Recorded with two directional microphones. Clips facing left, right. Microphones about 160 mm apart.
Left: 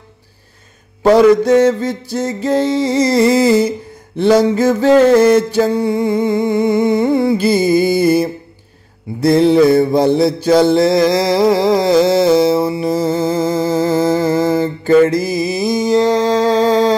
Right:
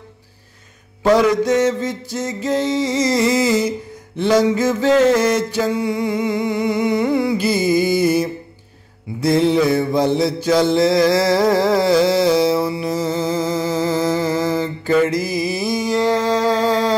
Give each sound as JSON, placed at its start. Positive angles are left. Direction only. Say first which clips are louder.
{"t": 1.0, "sound": "music", "louder": "left 5 dB", "side_deg": 30}
{"t": 5.1, "sound": "a sound", "louder": "left 7 dB", "side_deg": 30}
{"t": 9.2, "sound": "mantra", "louder": "left 5 dB", "side_deg": 35}
{"t": 13.7, "sound": "music", "louder": "left 5 dB", "side_deg": 50}
{"t": 14.3, "sound": "mantra", "louder": "left 5 dB", "side_deg": 25}